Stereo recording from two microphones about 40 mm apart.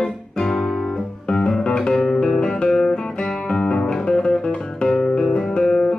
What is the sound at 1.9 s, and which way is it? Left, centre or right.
Music, centre.